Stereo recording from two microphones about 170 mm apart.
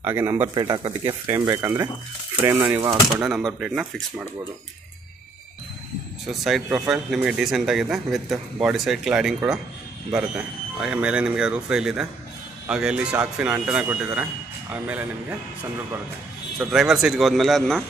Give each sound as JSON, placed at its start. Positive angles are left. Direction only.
{"t": 0.0, "sound": "speech", "side_deg": -15}
{"t": 0.6, "sound": "speech", "side_deg": -25}
{"t": 6.2, "sound": "speech", "side_deg": 0}
{"t": 16.5, "sound": "speech", "side_deg": 0}